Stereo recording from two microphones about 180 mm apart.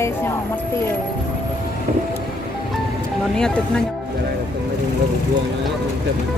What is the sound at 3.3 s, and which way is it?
Speech, 5° left (ahead or behind).